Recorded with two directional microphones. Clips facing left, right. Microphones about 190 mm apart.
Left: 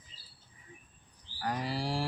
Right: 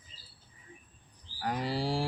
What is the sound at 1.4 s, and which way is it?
Speech, 20° right (ahead or behind).